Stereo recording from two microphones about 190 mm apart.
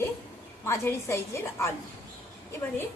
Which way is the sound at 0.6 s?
15° left (ahead or behind).